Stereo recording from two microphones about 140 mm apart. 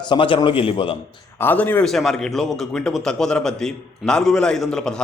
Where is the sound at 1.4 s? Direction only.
15° left (ahead or behind).